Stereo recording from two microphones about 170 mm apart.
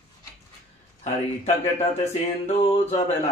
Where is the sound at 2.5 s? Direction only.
40° left (ahead or behind).